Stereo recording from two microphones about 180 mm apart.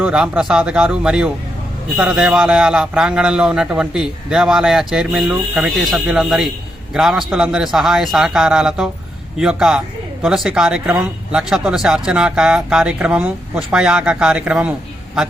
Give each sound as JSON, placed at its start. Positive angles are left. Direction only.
{"t": 0.0, "sound": "speech", "side_deg": -5}